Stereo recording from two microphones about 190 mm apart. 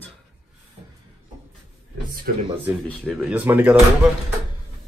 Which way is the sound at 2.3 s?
50° right (ahead or behind).